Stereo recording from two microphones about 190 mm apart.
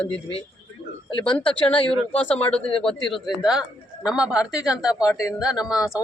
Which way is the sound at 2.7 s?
30° left (ahead or behind).